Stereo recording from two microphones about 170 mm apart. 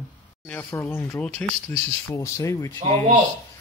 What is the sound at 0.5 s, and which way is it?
Speech, 15° left (ahead or behind).